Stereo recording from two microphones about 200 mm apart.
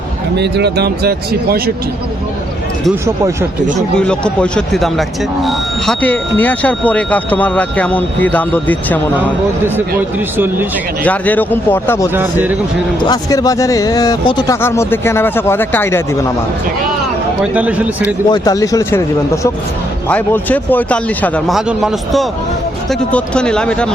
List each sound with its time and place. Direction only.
0.3 s speech: 55° right (ahead or behind)
3.8 s speech: 5° left (ahead or behind)
10.3 s speech: 10° right (ahead or behind)
11.0 s speech: 10° left (ahead or behind)
12.1 s speech: 10° right (ahead or behind)
13.1 s speech: 20° left (ahead or behind)
17.4 s speech: 5° right (ahead or behind)
18.3 s speech: 15° left (ahead or behind)